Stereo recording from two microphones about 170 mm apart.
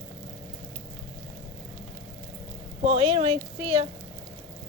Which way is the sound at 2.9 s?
35° right (ahead or behind).